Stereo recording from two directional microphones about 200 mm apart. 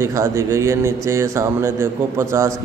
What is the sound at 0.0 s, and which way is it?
Speech, 15° right (ahead or behind).